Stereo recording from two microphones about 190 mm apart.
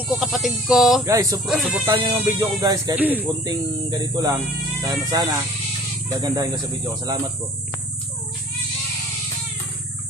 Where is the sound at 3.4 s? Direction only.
20° right (ahead or behind).